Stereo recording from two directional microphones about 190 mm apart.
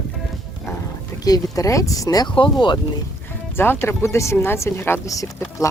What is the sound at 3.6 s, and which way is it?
Speech, 10° left (ahead or behind).